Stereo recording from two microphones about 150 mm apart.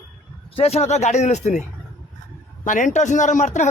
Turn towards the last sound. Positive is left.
turn(degrees=55)  # may be behind; listen again after turning